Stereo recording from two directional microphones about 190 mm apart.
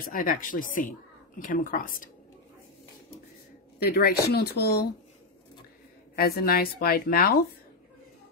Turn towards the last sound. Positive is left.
turn(degrees=50)  # may be behind; listen again after turning